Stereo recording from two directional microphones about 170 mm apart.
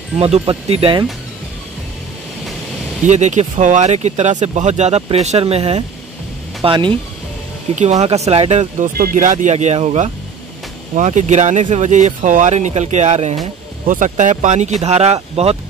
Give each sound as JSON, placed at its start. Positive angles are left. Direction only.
{"t": 0.2, "sound": "speech", "side_deg": -35}
{"t": 3.1, "sound": "speech", "side_deg": -45}
{"t": 7.7, "sound": "speech", "side_deg": -40}